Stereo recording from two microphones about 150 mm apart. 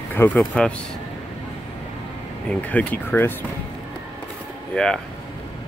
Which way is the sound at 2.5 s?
10° left (ahead or behind).